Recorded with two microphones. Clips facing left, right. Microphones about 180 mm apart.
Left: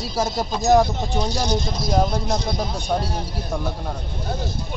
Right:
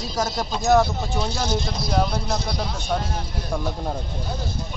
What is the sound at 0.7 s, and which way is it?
Speech, 15° left (ahead or behind).